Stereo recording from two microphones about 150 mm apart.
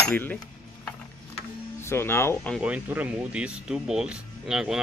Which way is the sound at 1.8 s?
15° left (ahead or behind).